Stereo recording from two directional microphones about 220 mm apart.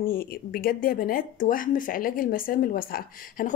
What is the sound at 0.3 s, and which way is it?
Speech, 45° left (ahead or behind).